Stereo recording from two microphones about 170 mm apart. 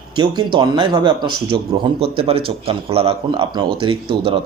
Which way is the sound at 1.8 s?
35° right (ahead or behind).